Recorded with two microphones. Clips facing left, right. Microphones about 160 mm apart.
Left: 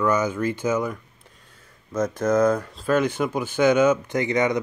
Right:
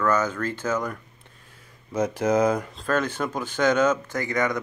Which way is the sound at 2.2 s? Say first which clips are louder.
Left 2 dB; 10° right (ahead or behind).